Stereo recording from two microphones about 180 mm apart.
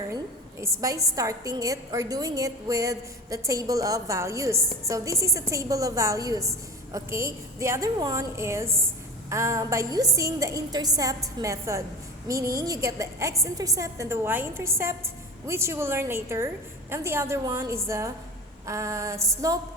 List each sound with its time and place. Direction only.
0.6 s a woman's voice: 15° right (ahead or behind)